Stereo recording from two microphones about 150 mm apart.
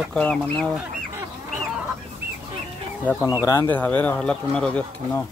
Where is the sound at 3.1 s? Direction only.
10° left (ahead or behind).